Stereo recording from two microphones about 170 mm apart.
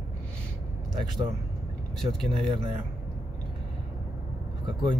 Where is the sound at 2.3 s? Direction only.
30° right (ahead or behind).